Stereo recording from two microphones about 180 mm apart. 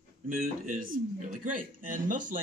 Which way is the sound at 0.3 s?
50° right (ahead or behind).